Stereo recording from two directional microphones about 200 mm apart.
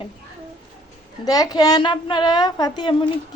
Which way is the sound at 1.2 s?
20° left (ahead or behind).